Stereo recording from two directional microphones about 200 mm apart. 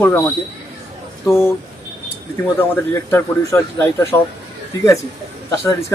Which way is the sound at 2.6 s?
10° left (ahead or behind).